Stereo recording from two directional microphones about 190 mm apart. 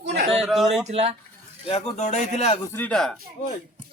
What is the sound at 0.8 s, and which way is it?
Speech, 30° right (ahead or behind).